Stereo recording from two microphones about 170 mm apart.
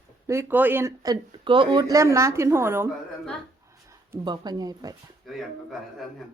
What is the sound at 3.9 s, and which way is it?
Speech, 20° right (ahead or behind).